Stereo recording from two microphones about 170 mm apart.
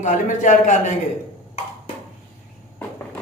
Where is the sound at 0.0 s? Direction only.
45° left (ahead or behind).